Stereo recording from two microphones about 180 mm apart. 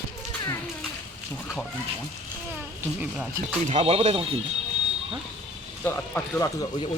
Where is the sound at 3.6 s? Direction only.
35° right (ahead or behind).